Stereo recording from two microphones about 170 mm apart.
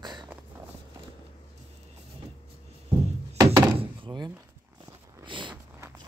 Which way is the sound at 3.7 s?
25° right (ahead or behind).